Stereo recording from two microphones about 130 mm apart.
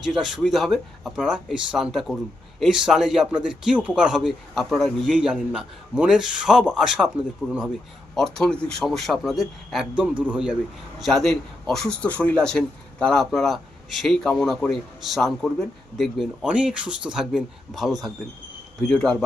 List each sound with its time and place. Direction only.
0.0 s speech: 5° right (ahead or behind)
8.1 s speech: 5° left (ahead or behind)
11.0 s speech: 5° left (ahead or behind)